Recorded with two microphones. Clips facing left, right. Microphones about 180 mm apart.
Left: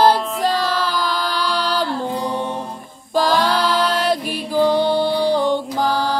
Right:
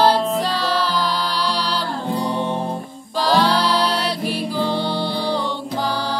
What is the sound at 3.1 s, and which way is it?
Music, 50° left (ahead or behind).